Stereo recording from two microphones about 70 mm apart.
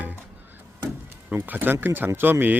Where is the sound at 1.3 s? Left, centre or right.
Right.